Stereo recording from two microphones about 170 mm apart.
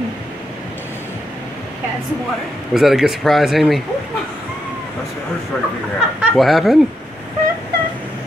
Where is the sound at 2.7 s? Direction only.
Centre (ahead or behind).